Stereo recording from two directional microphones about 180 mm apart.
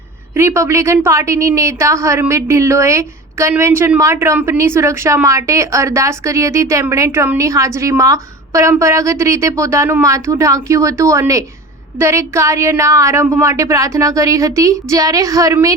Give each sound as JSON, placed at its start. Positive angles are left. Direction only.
{"t": 0.3, "sound": "a woman's voice", "side_deg": -15}